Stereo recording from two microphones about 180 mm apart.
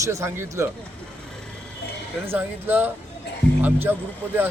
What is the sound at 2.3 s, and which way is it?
A man's voice, 10° right (ahead or behind).